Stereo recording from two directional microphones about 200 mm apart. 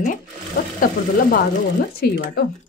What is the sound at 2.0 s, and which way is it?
Speech, 50° left (ahead or behind).